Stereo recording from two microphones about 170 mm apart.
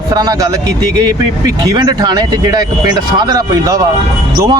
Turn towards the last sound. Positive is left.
turn(degrees=-25)  # may be behind; listen again after turning